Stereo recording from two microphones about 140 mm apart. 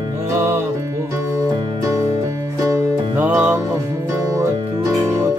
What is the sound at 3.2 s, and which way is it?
Music, 15° right (ahead or behind).